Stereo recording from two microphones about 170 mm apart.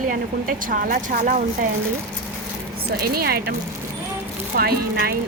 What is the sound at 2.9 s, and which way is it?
Speech, 65° right (ahead or behind).